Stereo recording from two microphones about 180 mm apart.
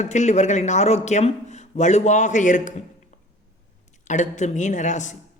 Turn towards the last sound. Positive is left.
turn(degrees=40)  # may be behind; listen again after turning